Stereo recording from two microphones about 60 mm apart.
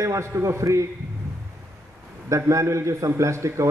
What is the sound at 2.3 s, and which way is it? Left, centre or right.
A man's voice, right.